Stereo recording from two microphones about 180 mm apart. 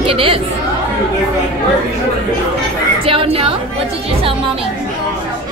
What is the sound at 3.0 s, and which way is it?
Chatter, 30° right (ahead or behind).